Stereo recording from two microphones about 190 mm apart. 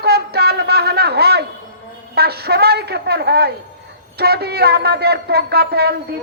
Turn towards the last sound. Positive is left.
turn(degrees=-55)  # may be behind; listen again after turning